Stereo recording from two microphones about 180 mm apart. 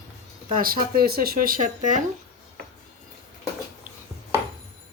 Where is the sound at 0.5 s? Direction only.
55° right (ahead or behind).